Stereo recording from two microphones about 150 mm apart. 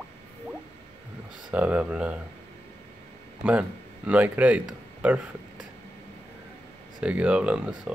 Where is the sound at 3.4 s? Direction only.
10° right (ahead or behind).